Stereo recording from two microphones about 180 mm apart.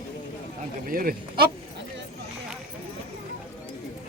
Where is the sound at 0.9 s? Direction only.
55° right (ahead or behind).